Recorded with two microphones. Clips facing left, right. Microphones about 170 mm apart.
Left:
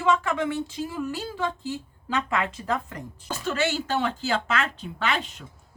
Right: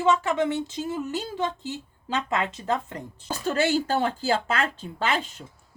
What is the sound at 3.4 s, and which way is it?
A woman's voice, 35° right (ahead or behind).